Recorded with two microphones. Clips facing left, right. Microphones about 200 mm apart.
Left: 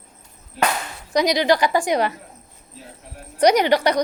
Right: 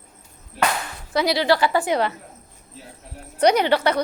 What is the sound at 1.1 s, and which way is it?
A woman's voice, 15° left (ahead or behind).